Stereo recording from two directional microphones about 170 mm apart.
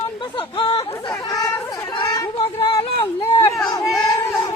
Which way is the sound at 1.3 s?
20° left (ahead or behind).